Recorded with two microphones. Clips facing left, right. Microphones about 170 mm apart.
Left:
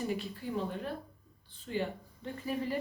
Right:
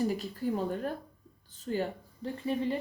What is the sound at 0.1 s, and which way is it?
Speech, 40° right (ahead or behind).